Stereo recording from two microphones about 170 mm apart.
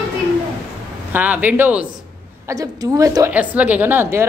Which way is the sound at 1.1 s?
10° right (ahead or behind).